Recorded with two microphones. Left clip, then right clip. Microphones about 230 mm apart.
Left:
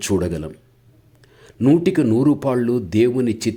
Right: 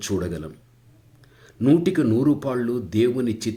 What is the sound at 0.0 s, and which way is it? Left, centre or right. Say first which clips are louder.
Speech: left 6 dB; left.